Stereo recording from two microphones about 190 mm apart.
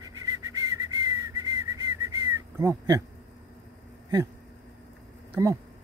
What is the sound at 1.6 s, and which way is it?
Whistling, 15° right (ahead or behind).